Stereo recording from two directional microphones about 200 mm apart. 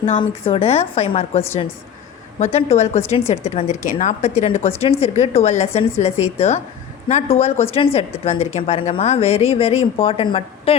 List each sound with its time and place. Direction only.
0.2 s a woman's voice: 25° left (ahead or behind)